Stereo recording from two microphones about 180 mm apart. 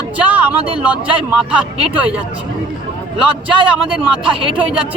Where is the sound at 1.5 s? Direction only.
5° right (ahead or behind).